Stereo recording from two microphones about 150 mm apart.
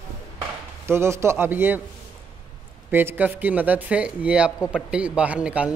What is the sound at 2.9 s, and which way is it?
Speech, 15° right (ahead or behind).